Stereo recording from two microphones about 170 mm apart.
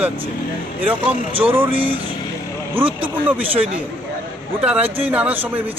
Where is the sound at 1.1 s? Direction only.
35° right (ahead or behind).